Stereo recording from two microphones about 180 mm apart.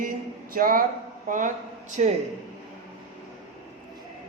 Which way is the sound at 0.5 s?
50° right (ahead or behind).